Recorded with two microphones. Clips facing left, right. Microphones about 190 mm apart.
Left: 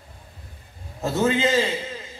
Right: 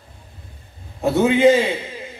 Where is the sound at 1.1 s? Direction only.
60° right (ahead or behind).